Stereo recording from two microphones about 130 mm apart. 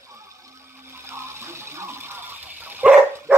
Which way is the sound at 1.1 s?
20° right (ahead or behind).